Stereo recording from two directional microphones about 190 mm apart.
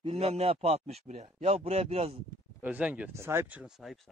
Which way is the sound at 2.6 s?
10° right (ahead or behind).